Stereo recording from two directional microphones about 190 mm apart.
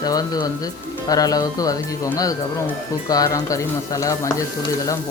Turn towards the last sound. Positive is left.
turn(degrees=15)  # may be behind; listen again after turning